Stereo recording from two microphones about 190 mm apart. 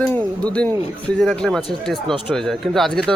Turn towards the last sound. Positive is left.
turn(degrees=0)  # may be behind; listen again after turning